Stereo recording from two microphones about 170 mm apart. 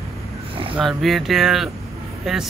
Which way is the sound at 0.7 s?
Centre (ahead or behind).